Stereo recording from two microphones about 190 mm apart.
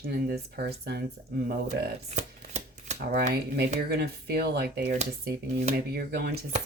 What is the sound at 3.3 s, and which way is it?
Speech, 60° right (ahead or behind).